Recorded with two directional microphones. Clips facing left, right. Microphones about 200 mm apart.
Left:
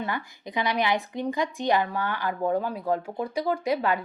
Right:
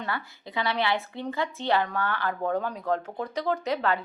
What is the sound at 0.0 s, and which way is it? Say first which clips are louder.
Speech: left 2 dB; 15° left (ahead or behind).